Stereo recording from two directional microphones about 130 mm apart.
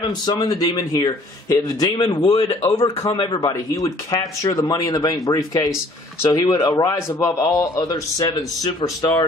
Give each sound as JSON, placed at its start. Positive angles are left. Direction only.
{"t": 0.1, "sound": "a man's voice", "side_deg": 35}
{"t": 2.2, "sound": "a man's voice", "side_deg": 50}
{"t": 2.6, "sound": "a man's voice", "side_deg": 30}